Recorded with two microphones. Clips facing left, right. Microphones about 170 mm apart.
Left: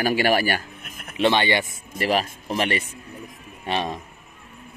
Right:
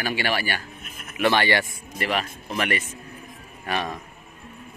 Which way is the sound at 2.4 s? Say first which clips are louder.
Left 2 dB; 30° left (ahead or behind).